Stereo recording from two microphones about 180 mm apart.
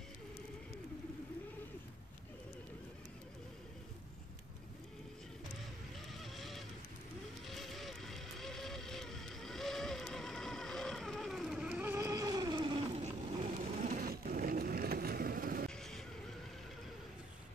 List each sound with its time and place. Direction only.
6.3 s vehicle: centre (ahead or behind); by 12.8 s 25° right (ahead or behind)
13.0 s a sound: 40° right (ahead or behind)
15.7 s vehicle: 5° left (ahead or behind)